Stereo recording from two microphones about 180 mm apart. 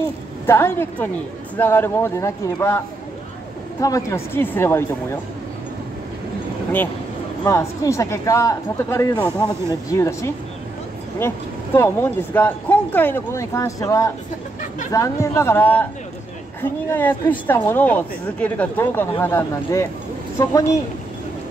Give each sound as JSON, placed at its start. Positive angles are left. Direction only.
{"t": 0.5, "sound": "speech", "side_deg": 15}
{"t": 3.8, "sound": "speech", "side_deg": 15}
{"t": 7.4, "sound": "speech", "side_deg": 15}
{"t": 16.9, "sound": "speech", "side_deg": 10}